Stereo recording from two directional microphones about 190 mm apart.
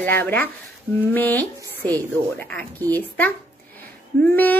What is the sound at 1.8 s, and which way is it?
Speech, 20° right (ahead or behind).